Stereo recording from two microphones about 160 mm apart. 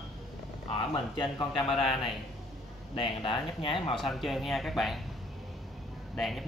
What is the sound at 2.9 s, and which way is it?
Speech, 30° left (ahead or behind).